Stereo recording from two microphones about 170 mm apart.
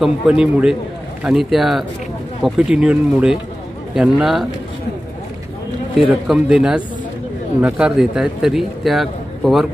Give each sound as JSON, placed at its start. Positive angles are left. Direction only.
{"t": 0.0, "sound": "a man's voice", "side_deg": -5}
{"t": 5.9, "sound": "a man's voice", "side_deg": -5}